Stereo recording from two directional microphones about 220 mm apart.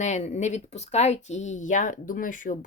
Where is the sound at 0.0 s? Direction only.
30° left (ahead or behind).